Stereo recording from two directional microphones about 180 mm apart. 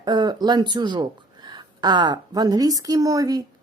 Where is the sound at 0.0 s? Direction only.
25° right (ahead or behind).